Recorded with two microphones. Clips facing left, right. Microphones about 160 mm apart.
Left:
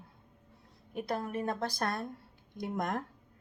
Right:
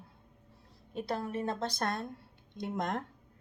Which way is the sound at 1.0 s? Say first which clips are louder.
Even; 25° right (ahead or behind).